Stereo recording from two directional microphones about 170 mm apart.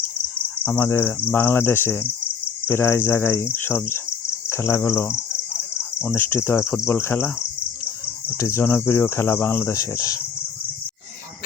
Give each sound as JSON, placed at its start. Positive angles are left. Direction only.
{"t": 0.6, "sound": "speech", "side_deg": 10}
{"t": 4.4, "sound": "cricket", "side_deg": 15}
{"t": 6.1, "sound": "speech", "side_deg": 15}